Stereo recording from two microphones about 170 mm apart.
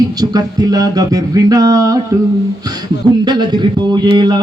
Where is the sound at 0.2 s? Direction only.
20° right (ahead or behind).